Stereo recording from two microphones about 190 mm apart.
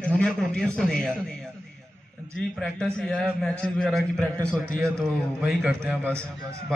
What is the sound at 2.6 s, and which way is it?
A man's voice, 5° left (ahead or behind).